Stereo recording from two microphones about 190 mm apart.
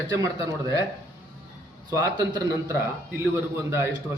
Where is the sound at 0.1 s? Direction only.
15° right (ahead or behind).